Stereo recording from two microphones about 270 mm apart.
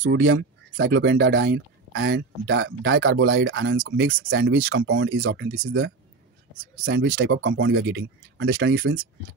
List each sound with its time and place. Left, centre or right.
0.0 s speech: right
6.8 s speech: right